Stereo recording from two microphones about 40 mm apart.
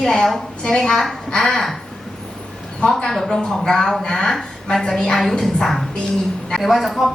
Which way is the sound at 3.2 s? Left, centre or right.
Centre.